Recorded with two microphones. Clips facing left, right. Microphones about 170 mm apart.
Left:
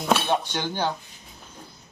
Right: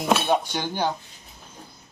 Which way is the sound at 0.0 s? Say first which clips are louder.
Right 1 dB; 10° right (ahead or behind).